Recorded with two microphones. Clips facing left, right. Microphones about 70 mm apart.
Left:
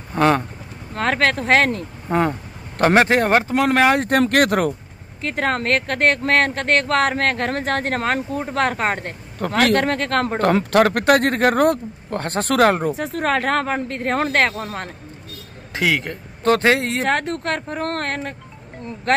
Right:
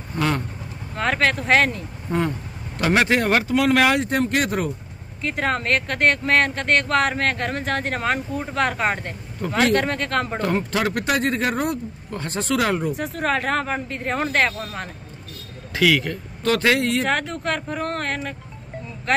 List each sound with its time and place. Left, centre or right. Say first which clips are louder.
0.1 s speech: left 7 dB; left
2.8 s speech: left 4 dB; left
4.2 s speech: left 5 dB; left
5.2 s speech: left 2 dB; left
9.4 s speech: left 2 dB; left
15.7 s speech: right 2 dB; left